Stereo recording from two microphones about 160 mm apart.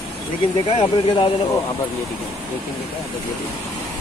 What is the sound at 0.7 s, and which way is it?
Speech, 35° left (ahead or behind).